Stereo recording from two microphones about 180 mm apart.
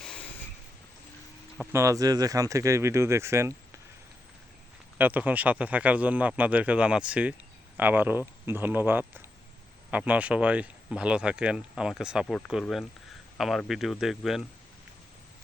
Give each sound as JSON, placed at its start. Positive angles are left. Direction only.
{"t": 0.0, "sound": "a sound", "side_deg": 5}
{"t": 1.5, "sound": "speech", "side_deg": -15}
{"t": 4.9, "sound": "speech", "side_deg": -10}